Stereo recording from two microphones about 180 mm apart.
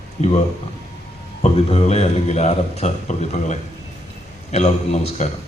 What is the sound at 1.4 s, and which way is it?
A man's voice, 35° left (ahead or behind).